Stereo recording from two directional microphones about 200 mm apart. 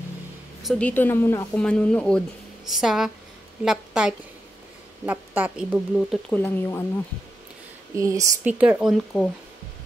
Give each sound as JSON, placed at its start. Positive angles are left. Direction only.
{"t": 0.6, "sound": "a woman's voice", "side_deg": 5}
{"t": 6.3, "sound": "speech", "side_deg": 10}
{"t": 7.9, "sound": "a woman's voice", "side_deg": -15}